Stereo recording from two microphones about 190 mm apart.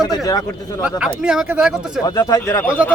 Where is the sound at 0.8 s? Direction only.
5° right (ahead or behind).